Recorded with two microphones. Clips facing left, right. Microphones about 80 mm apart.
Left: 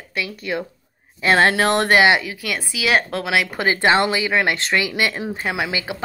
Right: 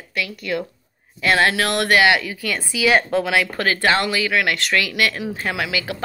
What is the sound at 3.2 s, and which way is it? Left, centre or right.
Speech, centre.